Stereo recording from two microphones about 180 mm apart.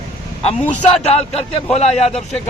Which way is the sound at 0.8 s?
35° left (ahead or behind).